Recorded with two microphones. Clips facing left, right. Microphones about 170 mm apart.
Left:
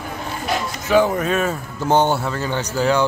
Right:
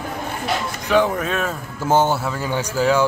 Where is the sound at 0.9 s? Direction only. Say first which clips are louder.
Left 2 dB; centre (ahead or behind).